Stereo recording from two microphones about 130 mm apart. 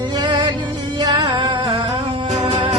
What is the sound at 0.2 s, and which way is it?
Music, 35° right (ahead or behind).